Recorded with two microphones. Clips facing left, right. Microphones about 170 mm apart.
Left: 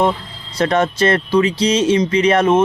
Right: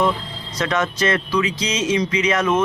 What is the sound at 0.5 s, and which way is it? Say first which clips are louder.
Speech: left 6 dB; 30° left (ahead or behind).